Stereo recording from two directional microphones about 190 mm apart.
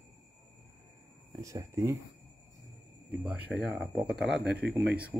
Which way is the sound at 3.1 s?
5° right (ahead or behind).